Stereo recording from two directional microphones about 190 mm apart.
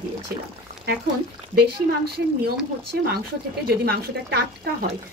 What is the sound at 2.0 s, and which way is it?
Speech, 55° right (ahead or behind).